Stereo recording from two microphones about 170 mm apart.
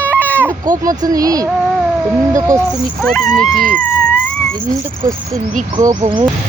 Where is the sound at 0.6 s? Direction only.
20° right (ahead or behind).